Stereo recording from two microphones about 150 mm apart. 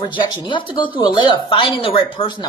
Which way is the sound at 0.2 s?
35° left (ahead or behind).